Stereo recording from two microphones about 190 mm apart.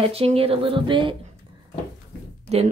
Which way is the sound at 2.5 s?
35° right (ahead or behind).